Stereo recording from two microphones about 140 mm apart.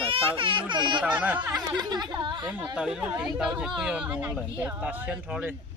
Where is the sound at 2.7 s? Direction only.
5° right (ahead or behind).